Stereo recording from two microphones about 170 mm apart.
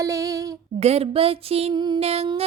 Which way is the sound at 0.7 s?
40° right (ahead or behind).